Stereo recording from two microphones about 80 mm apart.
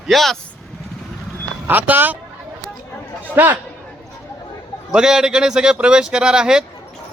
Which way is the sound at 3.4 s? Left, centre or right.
Right.